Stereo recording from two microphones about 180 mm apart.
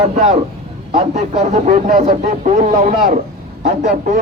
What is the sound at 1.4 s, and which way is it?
Speech, 50° right (ahead or behind).